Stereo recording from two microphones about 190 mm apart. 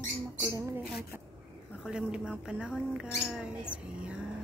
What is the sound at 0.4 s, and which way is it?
Speech, 15° right (ahead or behind).